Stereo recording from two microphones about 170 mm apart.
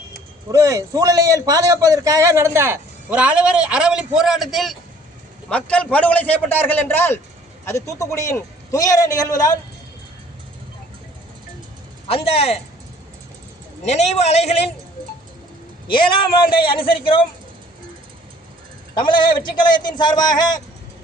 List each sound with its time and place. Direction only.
0.5 s a man's voice: 20° right (ahead or behind); by 9.5 s 20° left (ahead or behind)
12.0 s a man's voice: 35° left (ahead or behind)
13.8 s a man's voice: 40° left (ahead or behind)
16.0 s a man's voice: 30° left (ahead or behind)
18.9 s a man's voice: 25° left (ahead or behind)